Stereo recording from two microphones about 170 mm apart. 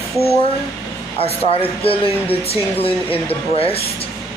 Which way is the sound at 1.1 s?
35° left (ahead or behind).